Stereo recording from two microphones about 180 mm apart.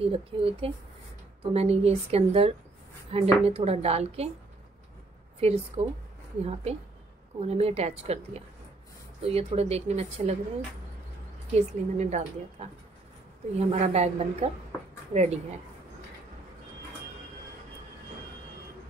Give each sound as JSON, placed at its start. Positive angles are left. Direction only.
{"t": 0.0, "sound": "a woman's voice", "side_deg": -30}
{"t": 5.4, "sound": "a woman's voice", "side_deg": -35}
{"t": 11.5, "sound": "a woman's voice", "side_deg": -40}